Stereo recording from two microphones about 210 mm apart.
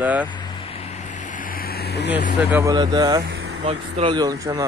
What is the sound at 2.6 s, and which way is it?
Speech, 20° right (ahead or behind).